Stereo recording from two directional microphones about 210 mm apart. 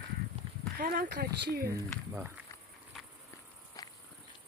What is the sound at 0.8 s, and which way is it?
Speech, 50° right (ahead or behind).